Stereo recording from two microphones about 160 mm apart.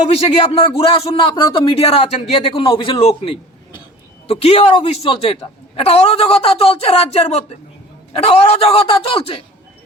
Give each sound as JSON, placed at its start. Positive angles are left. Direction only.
{"t": 0.1, "sound": "a man's voice", "side_deg": 40}
{"t": 0.6, "sound": "a man's voice", "side_deg": 30}